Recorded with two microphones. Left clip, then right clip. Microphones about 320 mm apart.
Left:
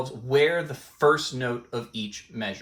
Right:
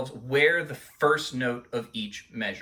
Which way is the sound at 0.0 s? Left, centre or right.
Centre.